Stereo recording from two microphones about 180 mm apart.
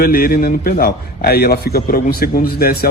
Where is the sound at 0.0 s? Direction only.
55° left (ahead or behind).